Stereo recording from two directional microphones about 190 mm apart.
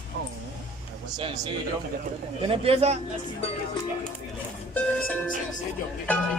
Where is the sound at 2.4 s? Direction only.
30° right (ahead or behind).